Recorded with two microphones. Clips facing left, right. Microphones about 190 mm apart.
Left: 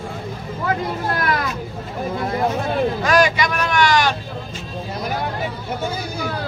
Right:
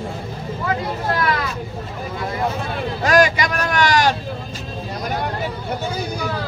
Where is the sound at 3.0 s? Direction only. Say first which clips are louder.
Right 4 dB; 40° right (ahead or behind).